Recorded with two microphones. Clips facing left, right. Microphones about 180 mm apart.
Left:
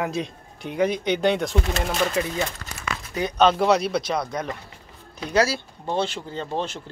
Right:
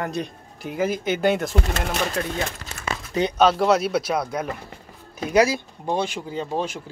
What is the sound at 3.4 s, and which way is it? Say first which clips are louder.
Speech: even; 5° right (ahead or behind).